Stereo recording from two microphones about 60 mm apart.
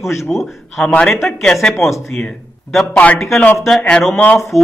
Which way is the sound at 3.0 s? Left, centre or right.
Left.